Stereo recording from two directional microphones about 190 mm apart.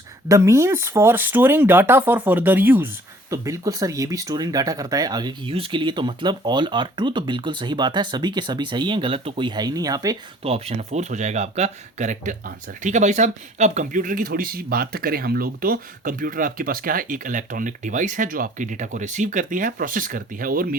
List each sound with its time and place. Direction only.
0.3 s speech: 15° right (ahead or behind)
10.4 s speech: 30° right (ahead or behind); by 20.7 s 50° right (ahead or behind)